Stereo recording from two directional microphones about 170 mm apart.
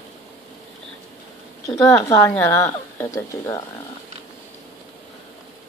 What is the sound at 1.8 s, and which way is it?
Speech, 15° left (ahead or behind).